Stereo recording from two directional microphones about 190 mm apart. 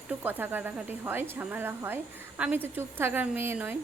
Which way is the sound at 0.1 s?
10° right (ahead or behind).